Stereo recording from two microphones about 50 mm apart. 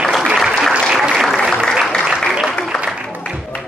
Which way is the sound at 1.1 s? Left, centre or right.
Centre.